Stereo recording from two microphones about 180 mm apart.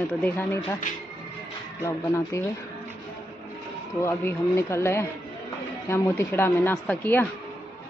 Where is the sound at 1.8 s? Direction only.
15° left (ahead or behind).